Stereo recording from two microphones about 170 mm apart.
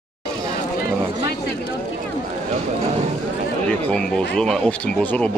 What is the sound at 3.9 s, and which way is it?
Speech, 5° left (ahead or behind).